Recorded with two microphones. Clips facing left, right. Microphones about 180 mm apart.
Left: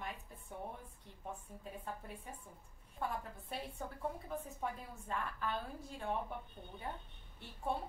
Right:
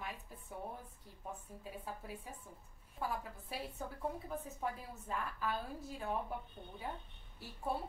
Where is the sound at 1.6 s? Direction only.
5° right (ahead or behind).